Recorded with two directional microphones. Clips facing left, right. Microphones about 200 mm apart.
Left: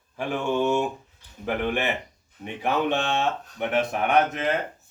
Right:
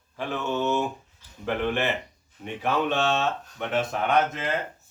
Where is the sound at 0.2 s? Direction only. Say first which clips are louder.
Left 3 dB; 15° left (ahead or behind).